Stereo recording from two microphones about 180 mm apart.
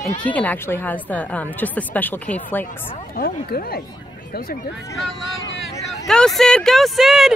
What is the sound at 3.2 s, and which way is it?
Speech, 60° left (ahead or behind).